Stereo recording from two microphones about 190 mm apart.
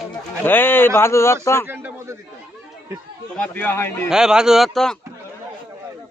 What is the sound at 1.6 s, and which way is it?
Speech, 10° right (ahead or behind).